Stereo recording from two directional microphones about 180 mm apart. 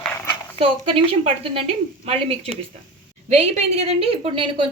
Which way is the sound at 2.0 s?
35° right (ahead or behind).